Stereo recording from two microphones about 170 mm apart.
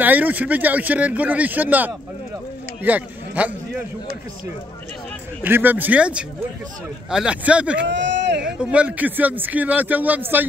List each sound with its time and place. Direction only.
0.0 s speech: 10° right (ahead or behind)
2.8 s a sound: 10° right (ahead or behind)
5.4 s speech: 10° right (ahead or behind)
7.8 s speech: 90° right
8.4 s speech: 5° right (ahead or behind)